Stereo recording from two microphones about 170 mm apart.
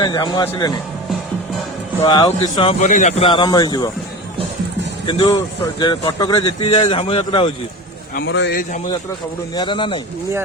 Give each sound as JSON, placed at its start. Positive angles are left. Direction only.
{"t": 0.0, "sound": "speech", "side_deg": 25}
{"t": 2.0, "sound": "speech", "side_deg": 25}
{"t": 2.8, "sound": "a man's voice", "side_deg": 45}
{"t": 5.0, "sound": "a man's voice", "side_deg": 30}
{"t": 8.1, "sound": "a man's voice", "side_deg": 80}
{"t": 9.6, "sound": "speech", "side_deg": 30}